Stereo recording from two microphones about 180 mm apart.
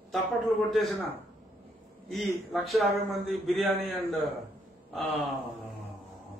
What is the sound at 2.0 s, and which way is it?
A man's voice, centre (ahead or behind).